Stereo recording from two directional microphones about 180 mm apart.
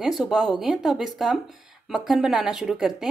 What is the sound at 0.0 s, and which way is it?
Speech, centre (ahead or behind).